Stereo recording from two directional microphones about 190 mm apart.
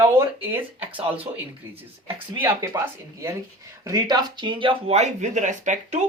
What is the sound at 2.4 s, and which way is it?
Speech, 15° right (ahead or behind).